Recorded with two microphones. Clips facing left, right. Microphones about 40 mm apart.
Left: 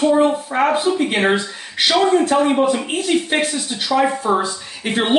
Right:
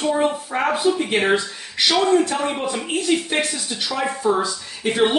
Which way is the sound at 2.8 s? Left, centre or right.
Left.